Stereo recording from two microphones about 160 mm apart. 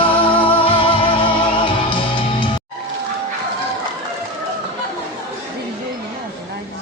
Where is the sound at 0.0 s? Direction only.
35° left (ahead or behind).